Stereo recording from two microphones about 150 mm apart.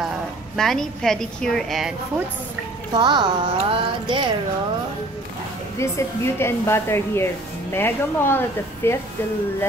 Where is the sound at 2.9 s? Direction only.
30° right (ahead or behind).